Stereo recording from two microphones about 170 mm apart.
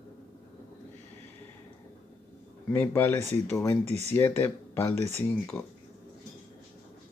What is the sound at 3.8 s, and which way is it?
Speech, 40° right (ahead or behind).